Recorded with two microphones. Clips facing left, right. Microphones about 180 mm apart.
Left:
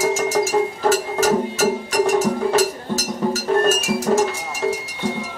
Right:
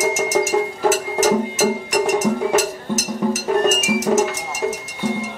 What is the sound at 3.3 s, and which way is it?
Music, 20° right (ahead or behind).